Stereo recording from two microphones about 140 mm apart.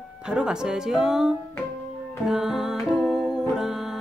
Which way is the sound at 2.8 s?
5° right (ahead or behind).